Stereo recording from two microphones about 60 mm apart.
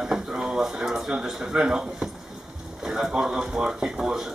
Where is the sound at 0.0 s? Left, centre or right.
Centre.